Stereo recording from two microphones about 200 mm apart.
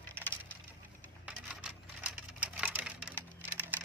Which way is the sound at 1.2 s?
5° right (ahead or behind).